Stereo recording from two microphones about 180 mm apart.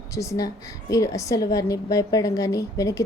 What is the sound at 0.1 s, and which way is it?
A woman's voice, 15° left (ahead or behind).